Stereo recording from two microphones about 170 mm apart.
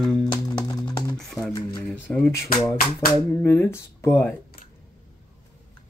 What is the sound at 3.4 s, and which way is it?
Speech, 10° left (ahead or behind).